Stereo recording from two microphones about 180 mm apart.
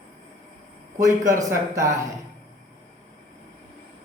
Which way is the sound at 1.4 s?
15° right (ahead or behind).